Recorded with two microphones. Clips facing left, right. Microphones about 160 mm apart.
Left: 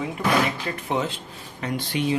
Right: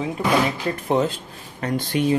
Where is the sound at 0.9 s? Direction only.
40° right (ahead or behind).